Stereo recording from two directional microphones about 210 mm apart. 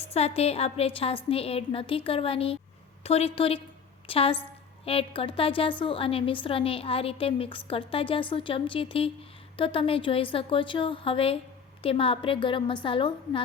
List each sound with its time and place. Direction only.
0.1 s a woman's voice: 30° left (ahead or behind)